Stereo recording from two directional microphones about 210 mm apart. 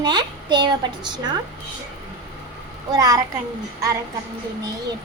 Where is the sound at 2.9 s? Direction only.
15° right (ahead or behind).